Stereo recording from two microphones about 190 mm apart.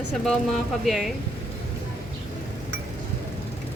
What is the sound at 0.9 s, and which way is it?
Speech, centre (ahead or behind).